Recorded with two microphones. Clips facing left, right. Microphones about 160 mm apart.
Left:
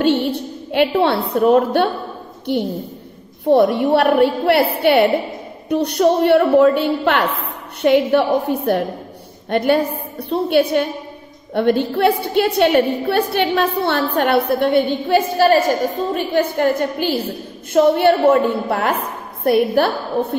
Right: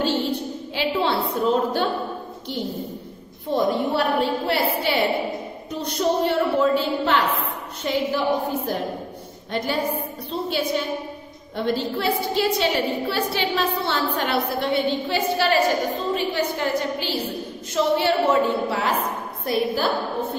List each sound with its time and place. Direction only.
0.0 s a woman's voice: 65° left (ahead or behind)